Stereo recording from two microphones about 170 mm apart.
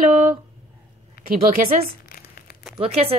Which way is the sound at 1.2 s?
65° left (ahead or behind).